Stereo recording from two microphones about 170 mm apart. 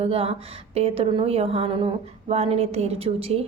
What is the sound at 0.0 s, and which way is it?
A woman's voice, 35° right (ahead or behind).